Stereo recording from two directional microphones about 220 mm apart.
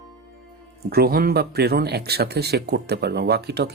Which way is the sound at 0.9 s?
45° right (ahead or behind).